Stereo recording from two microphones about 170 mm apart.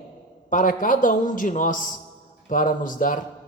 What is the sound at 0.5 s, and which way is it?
Speech, 50° left (ahead or behind).